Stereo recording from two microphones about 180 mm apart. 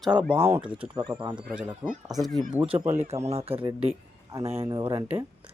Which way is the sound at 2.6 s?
30° right (ahead or behind).